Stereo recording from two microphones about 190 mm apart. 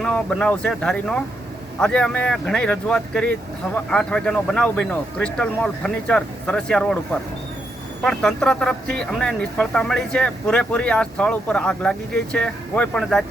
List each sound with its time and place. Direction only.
0.0 s speech: 5° left (ahead or behind)